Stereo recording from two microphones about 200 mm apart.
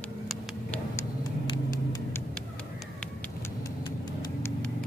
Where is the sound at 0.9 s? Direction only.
20° left (ahead or behind).